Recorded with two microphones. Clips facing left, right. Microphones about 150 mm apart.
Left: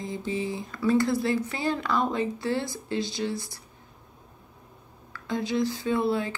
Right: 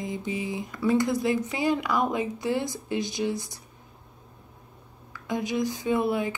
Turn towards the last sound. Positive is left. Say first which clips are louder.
# right 1 dB
turn(degrees=-15)  # may be behind; listen again after turning